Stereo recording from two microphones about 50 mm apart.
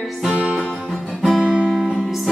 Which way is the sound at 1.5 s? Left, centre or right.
Centre.